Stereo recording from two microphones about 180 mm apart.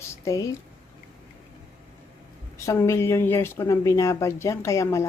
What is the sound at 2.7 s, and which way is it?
Speech, 15° left (ahead or behind).